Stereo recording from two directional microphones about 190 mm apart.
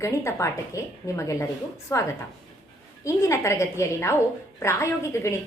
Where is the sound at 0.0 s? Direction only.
15° left (ahead or behind).